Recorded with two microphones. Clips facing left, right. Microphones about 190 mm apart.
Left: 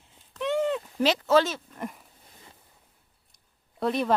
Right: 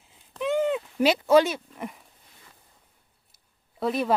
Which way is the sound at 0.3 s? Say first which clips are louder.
Right 2 dB; 5° right (ahead or behind).